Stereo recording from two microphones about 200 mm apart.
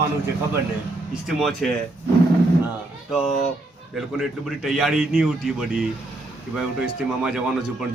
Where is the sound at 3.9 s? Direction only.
Centre (ahead or behind).